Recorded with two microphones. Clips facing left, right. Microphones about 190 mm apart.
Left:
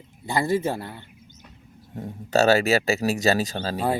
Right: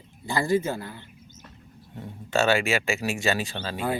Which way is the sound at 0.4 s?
25° left (ahead or behind).